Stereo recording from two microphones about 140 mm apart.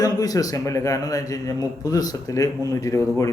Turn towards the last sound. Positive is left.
turn(degrees=20)  # may be behind; listen again after turning